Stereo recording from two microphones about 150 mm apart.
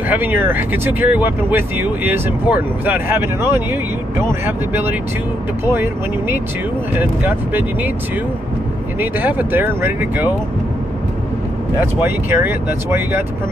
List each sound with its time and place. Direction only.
0.1 s speech: 15° right (ahead or behind)
9.0 s speech: 10° right (ahead or behind)
11.8 s speech: 15° right (ahead or behind)